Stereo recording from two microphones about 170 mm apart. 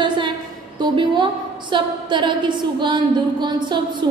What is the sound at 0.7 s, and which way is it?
A woman's voice, 25° right (ahead or behind).